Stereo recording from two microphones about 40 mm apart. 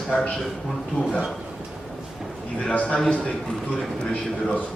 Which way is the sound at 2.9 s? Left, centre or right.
Left.